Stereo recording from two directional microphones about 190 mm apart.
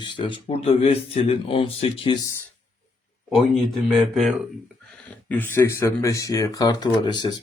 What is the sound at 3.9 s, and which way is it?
Speech, centre (ahead or behind).